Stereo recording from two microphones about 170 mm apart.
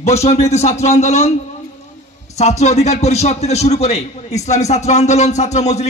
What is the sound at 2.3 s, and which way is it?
A man's voice, 40° left (ahead or behind).